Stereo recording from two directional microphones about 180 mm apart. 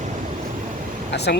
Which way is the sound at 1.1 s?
65° left (ahead or behind).